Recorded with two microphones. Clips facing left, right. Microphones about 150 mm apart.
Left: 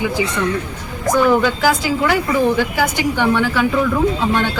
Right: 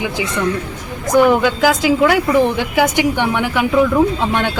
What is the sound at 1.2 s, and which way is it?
A woman's voice, 15° right (ahead or behind).